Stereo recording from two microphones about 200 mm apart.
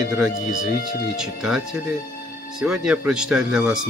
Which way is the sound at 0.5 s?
45° left (ahead or behind).